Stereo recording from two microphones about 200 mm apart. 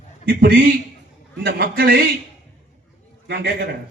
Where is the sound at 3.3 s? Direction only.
55° right (ahead or behind).